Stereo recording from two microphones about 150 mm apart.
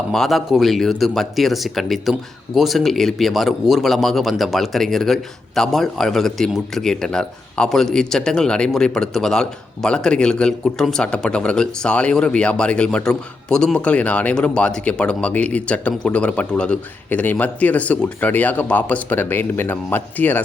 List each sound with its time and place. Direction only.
0.1 s speech: centre (ahead or behind)